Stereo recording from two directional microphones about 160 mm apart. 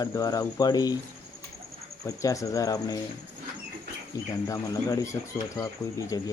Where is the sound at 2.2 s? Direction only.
20° left (ahead or behind).